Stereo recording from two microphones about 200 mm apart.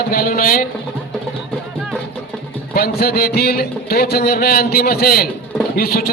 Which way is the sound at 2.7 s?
50° left (ahead or behind).